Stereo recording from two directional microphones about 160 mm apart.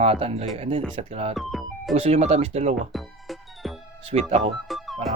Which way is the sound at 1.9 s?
40° right (ahead or behind).